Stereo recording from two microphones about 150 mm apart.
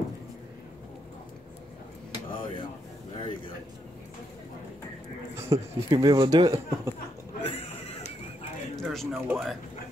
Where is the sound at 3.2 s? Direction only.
35° left (ahead or behind).